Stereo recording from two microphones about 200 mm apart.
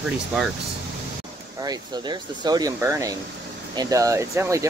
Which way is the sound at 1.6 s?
20° right (ahead or behind).